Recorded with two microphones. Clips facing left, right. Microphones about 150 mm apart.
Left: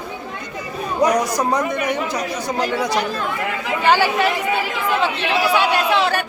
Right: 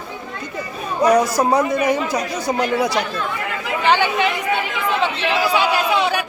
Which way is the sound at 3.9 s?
5° left (ahead or behind).